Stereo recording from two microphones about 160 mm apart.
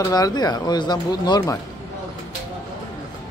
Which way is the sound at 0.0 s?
25° left (ahead or behind).